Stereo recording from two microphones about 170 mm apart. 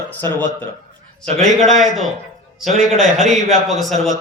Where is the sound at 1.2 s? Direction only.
Centre (ahead or behind).